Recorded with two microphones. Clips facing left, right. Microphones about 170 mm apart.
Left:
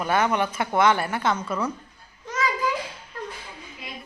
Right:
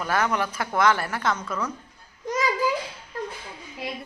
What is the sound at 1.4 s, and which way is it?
Speech, 10° left (ahead or behind).